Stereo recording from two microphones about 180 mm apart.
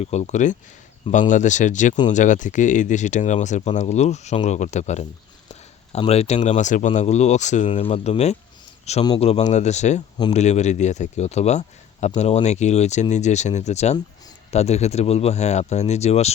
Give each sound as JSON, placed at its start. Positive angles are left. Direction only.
{"t": 0.0, "sound": "speech", "side_deg": 40}